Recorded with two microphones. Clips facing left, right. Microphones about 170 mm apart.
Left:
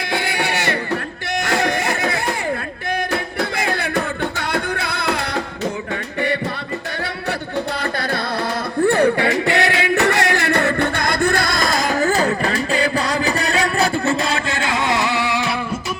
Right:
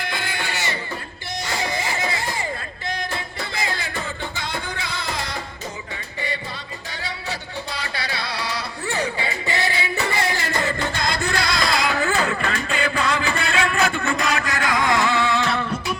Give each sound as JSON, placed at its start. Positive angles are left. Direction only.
{"t": 0.1, "sound": "music", "side_deg": 70}
{"t": 1.4, "sound": "baby cry", "side_deg": 65}
{"t": 3.6, "sound": "music", "side_deg": 65}
{"t": 7.8, "sound": "music", "side_deg": 50}